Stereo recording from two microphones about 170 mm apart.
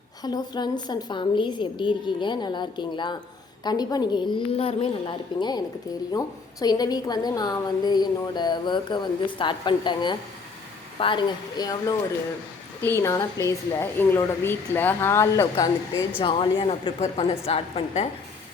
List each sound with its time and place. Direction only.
0.2 s a woman's voice: 25° left (ahead or behind)
16.2 s a woman's voice: 30° left (ahead or behind)